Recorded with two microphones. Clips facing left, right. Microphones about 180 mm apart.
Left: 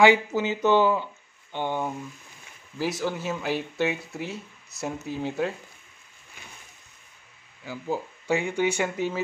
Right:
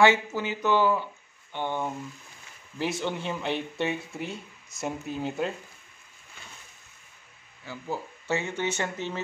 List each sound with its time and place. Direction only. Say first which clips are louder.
0.0 s speech: left 3 dB; 15° left (ahead or behind)
2.8 s speech: left 2 dB; centre (ahead or behind)
7.6 s speech: left 4 dB; 15° left (ahead or behind)